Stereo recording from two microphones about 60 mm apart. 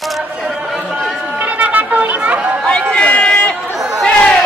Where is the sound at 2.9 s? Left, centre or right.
Centre.